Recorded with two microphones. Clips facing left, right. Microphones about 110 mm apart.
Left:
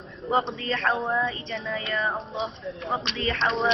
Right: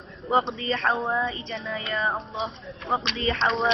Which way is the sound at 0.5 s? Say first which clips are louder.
Right 1 dB; 15° right (ahead or behind).